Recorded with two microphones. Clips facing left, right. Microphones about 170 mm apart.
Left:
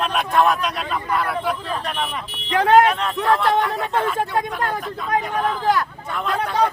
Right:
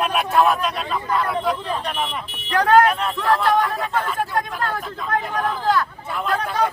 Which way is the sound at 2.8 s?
Centre (ahead or behind).